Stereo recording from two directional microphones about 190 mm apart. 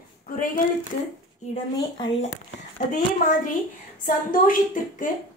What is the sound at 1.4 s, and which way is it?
Speech, 35° left (ahead or behind).